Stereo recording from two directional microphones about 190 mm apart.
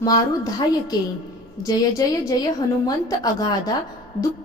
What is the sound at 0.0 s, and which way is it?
A woman's voice, 20° left (ahead or behind).